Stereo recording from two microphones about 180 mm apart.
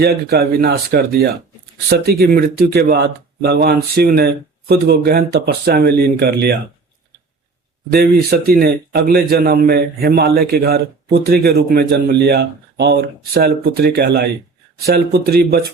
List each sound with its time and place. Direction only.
0.0 s speech: 65° right (ahead or behind)
7.9 s speech: 60° right (ahead or behind)